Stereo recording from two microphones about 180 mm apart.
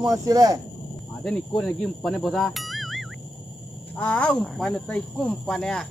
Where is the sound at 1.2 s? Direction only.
Centre (ahead or behind).